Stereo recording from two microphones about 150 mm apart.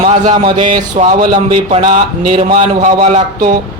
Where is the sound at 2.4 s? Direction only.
45° right (ahead or behind).